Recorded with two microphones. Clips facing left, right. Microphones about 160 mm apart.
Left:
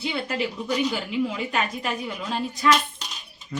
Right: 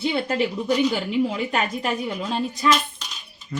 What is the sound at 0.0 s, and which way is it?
A woman's voice, 35° right (ahead or behind).